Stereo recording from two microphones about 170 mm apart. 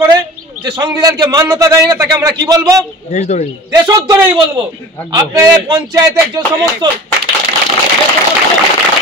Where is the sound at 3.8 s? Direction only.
20° right (ahead or behind).